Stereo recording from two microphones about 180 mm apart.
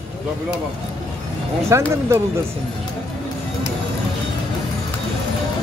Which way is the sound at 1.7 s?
15° right (ahead or behind).